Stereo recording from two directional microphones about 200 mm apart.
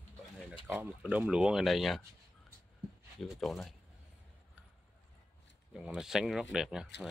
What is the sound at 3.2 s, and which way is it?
Speech, centre (ahead or behind).